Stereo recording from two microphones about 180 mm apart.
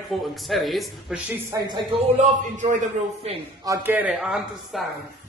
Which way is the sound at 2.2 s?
45° right (ahead or behind).